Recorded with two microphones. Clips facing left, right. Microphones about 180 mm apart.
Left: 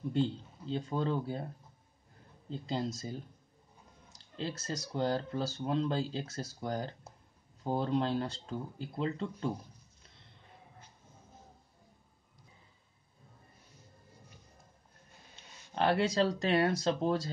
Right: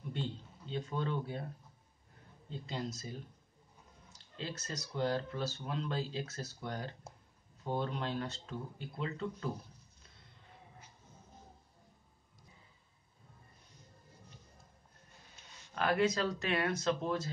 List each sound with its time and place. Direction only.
0.1 s speech: 35° left (ahead or behind)
2.5 s speech: 30° left (ahead or behind)
4.4 s speech: 30° left (ahead or behind)
15.7 s speech: 30° left (ahead or behind)